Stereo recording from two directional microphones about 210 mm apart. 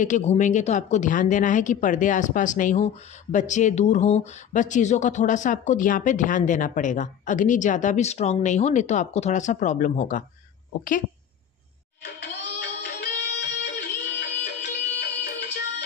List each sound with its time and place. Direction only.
0.0 s speech: 35° left (ahead or behind)
12.0 s music: 55° left (ahead or behind)